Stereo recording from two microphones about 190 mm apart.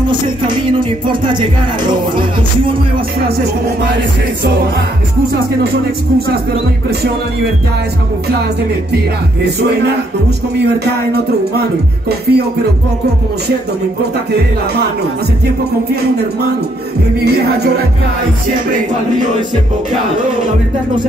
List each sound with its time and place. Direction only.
0.0 s music: 25° right (ahead or behind)
8.9 s music: 60° right (ahead or behind)
12.1 s music: 55° right (ahead or behind)
17.2 s music: 60° right (ahead or behind)